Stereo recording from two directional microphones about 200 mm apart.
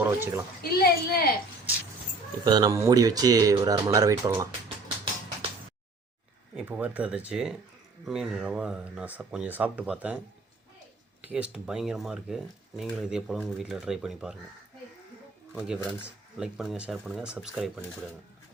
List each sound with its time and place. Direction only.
0.0 s speech: 10° right (ahead or behind)
0.6 s a woman's voice: 50° left (ahead or behind)
2.4 s speech: 20° right (ahead or behind)
6.6 s speech: 5° right (ahead or behind)
11.2 s speech: 5° right (ahead or behind)
15.5 s speech: 5° right (ahead or behind)